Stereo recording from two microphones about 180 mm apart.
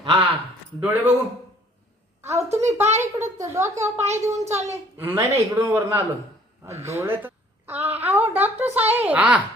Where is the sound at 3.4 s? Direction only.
15° right (ahead or behind).